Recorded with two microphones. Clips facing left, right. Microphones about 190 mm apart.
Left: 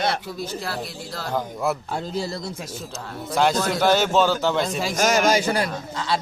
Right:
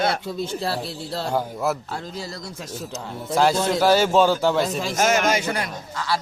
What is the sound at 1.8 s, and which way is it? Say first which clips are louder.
Speech: left 5 dB; 20° left (ahead or behind).